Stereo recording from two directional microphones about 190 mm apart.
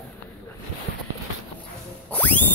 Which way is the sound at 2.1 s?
10° left (ahead or behind).